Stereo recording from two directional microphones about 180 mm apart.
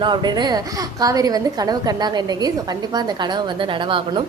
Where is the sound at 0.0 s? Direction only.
25° right (ahead or behind).